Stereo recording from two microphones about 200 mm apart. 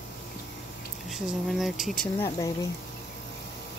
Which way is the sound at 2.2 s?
15° left (ahead or behind).